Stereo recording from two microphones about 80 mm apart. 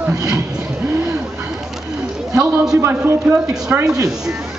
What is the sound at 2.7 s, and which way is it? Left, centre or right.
A man's voice, right.